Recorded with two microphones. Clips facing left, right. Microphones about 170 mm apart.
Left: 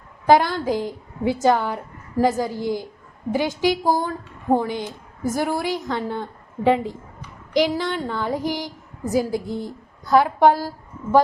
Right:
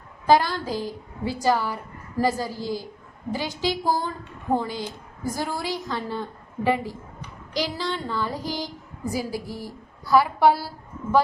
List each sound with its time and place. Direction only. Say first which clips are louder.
0.3 s a woman's voice: left 3 dB; 20° left (ahead or behind)
10.4 s a woman's voice: left 3 dB; 10° right (ahead or behind)